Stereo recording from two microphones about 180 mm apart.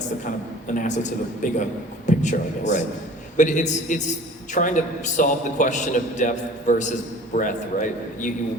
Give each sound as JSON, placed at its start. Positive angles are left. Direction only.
{"t": 0.3, "sound": "a man's voice", "side_deg": 45}